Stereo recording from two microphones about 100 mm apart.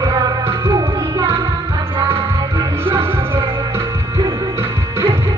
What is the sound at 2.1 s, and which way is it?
Music, 25° right (ahead or behind).